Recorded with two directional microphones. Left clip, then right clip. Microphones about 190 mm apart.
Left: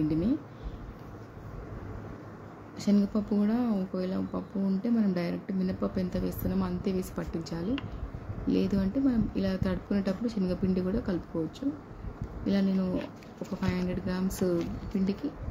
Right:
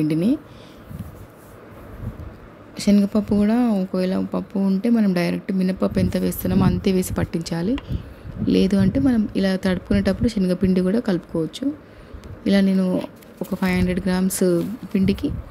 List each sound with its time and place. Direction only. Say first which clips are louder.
0.1 s speech: right 8 dB; 40° right (ahead or behind)
2.7 s speech: right 9 dB; 40° right (ahead or behind)